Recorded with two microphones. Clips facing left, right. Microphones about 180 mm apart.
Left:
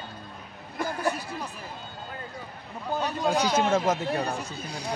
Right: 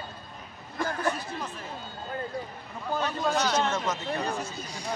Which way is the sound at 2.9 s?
10° left (ahead or behind).